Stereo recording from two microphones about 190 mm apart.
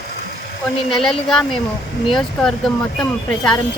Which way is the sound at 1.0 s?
5° left (ahead or behind).